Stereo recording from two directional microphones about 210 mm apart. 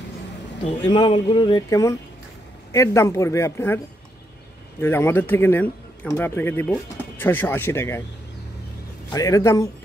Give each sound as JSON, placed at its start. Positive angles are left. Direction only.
{"t": 0.7, "sound": "speech", "side_deg": 25}
{"t": 9.1, "sound": "speech", "side_deg": 15}